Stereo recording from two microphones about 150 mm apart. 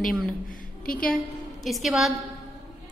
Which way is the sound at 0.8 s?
5° left (ahead or behind).